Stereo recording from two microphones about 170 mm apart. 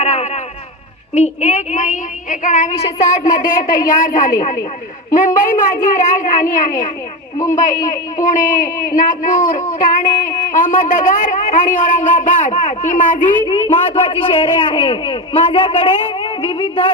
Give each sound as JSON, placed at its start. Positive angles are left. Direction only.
{"t": 0.0, "sound": "a sound", "side_deg": 40}
{"t": 1.1, "sound": "a man's voice", "side_deg": 40}
{"t": 2.7, "sound": "a man's voice", "side_deg": 35}
{"t": 3.4, "sound": "a man's voice", "side_deg": 55}
{"t": 13.4, "sound": "a man's voice", "side_deg": 30}